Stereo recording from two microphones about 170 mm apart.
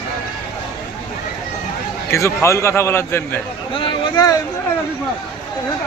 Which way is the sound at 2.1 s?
15° left (ahead or behind).